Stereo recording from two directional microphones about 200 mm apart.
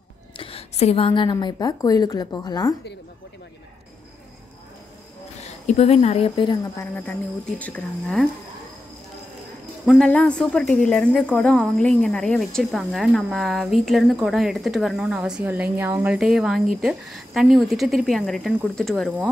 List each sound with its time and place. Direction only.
0.4 s a woman's voice: 30° left (ahead or behind)
5.7 s speech: 30° left (ahead or behind)
6.6 s a woman's voice: 10° left (ahead or behind)
9.8 s speech: 5° left (ahead or behind)